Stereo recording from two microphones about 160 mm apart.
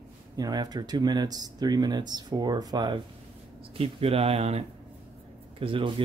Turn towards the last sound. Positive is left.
turn(degrees=-35)  # may be behind; listen again after turning